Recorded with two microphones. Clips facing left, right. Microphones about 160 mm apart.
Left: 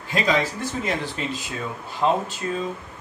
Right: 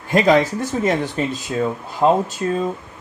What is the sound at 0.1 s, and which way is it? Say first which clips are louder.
Speech: right 8 dB; 50° right (ahead or behind).